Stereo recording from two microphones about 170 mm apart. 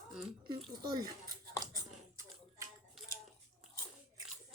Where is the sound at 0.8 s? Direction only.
20° right (ahead or behind).